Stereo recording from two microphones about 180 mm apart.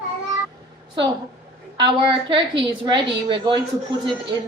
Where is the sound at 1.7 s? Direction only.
25° right (ahead or behind).